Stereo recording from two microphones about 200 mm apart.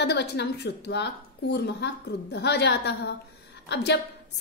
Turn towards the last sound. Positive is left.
turn(degrees=55)  # may be behind; listen again after turning